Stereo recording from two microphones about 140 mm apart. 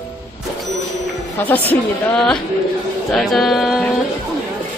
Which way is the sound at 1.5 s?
15° left (ahead or behind).